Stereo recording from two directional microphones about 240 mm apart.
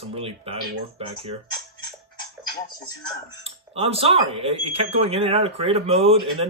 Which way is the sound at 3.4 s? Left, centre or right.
Right.